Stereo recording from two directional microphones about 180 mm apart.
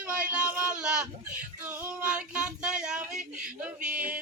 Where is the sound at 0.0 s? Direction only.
5° right (ahead or behind).